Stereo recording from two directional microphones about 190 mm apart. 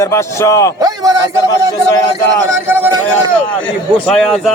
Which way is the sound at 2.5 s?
15° right (ahead or behind).